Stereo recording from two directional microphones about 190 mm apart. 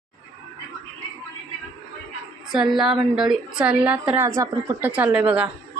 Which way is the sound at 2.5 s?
Centre (ahead or behind).